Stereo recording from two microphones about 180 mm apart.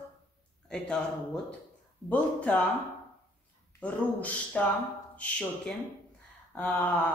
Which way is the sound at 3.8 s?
10° left (ahead or behind).